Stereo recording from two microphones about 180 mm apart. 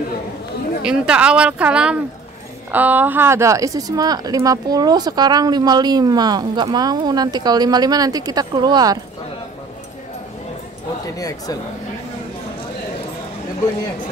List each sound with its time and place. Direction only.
0.8 s speech: 5° right (ahead or behind); by 9.0 s 20° right (ahead or behind)
11.1 s speech: 20° left (ahead or behind)